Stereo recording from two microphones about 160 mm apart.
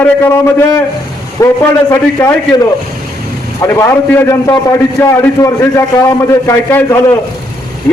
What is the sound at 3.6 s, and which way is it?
A man's voice, 20° left (ahead or behind).